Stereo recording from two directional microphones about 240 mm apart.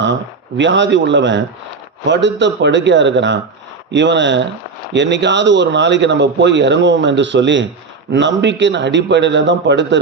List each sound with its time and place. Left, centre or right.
0.0 s speech: right